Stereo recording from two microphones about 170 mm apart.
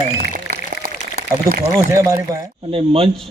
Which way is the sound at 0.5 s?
55° right (ahead or behind).